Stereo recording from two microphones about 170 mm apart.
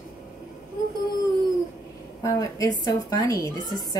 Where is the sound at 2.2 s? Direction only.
20° left (ahead or behind).